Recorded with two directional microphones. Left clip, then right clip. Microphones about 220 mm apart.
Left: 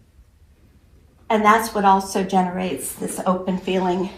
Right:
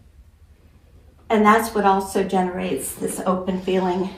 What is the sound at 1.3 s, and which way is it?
A woman's voice, 20° left (ahead or behind).